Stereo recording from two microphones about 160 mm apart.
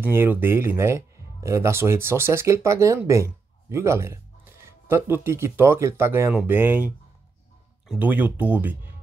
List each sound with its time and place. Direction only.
0.0 s speech: 15° right (ahead or behind)
7.9 s speech: 10° right (ahead or behind)